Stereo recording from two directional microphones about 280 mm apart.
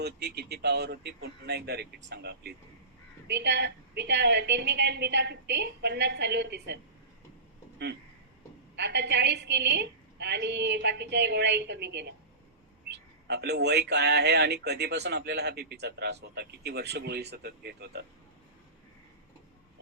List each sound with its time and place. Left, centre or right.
0.0 s speech: right
8.7 s speech: right